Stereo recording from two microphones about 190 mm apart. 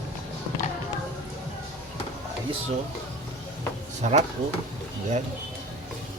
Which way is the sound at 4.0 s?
35° right (ahead or behind).